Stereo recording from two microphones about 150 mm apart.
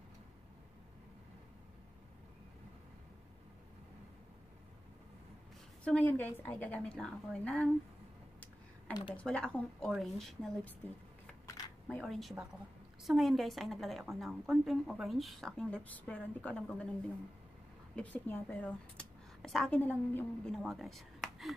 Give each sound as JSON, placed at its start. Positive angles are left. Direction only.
{"t": 5.9, "sound": "a woman's voice", "side_deg": 10}
{"t": 9.1, "sound": "a woman's voice", "side_deg": 5}
{"t": 11.9, "sound": "a woman's voice", "side_deg": 0}
{"t": 17.9, "sound": "a woman's voice", "side_deg": 10}